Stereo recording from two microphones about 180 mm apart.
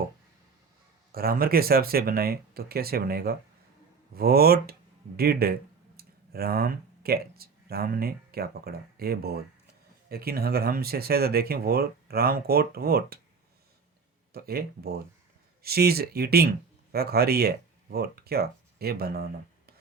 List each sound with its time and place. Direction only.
1.1 s speech: 55° right (ahead or behind)
14.3 s speech: 60° right (ahead or behind)